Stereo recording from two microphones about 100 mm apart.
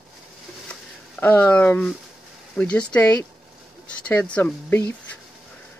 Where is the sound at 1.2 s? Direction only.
20° left (ahead or behind).